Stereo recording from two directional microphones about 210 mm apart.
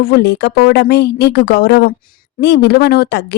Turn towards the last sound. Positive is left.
turn(degrees=50)  # may be behind; listen again after turning